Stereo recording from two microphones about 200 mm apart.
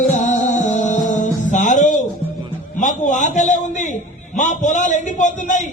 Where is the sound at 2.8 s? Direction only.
40° left (ahead or behind).